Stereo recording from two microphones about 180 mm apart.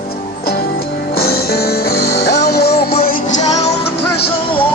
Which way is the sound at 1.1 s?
60° left (ahead or behind).